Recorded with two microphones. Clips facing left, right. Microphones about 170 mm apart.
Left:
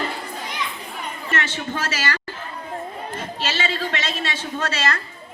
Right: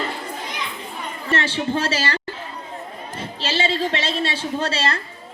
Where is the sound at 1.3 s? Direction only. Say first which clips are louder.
Right 5 dB; 30° right (ahead or behind).